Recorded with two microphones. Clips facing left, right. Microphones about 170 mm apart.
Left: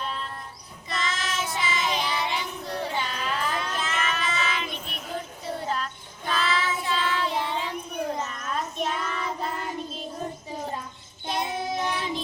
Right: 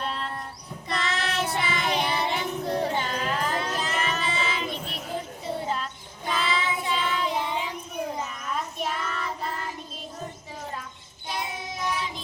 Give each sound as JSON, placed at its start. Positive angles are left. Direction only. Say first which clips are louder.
{"t": 0.0, "sound": "child singing", "louder": "right 2 dB", "side_deg": -70}
{"t": 11.3, "sound": "child singing", "louder": "left 5 dB", "side_deg": 30}